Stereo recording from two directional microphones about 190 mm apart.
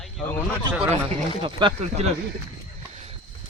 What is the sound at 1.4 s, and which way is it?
Speech, 30° right (ahead or behind).